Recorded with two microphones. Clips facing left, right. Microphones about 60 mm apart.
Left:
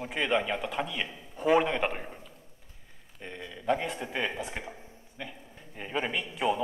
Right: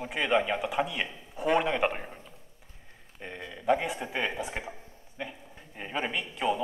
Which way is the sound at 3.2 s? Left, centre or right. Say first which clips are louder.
Right 1 dB; centre.